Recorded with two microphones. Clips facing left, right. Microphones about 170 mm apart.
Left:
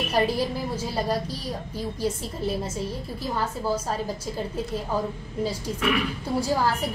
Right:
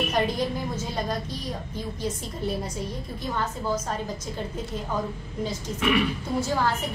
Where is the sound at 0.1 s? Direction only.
35° left (ahead or behind).